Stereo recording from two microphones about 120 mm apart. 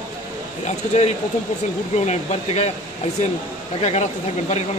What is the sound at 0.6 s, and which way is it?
Speech, 65° left (ahead or behind).